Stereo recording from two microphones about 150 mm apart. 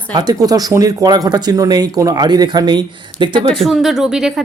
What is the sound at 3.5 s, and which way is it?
Speech, centre (ahead or behind).